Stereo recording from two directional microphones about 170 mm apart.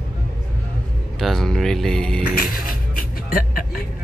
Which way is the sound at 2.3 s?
60° left (ahead or behind).